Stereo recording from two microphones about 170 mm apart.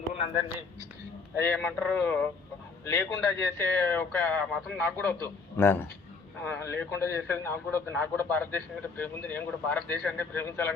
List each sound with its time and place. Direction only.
1.4 s a man's voice: 10° left (ahead or behind)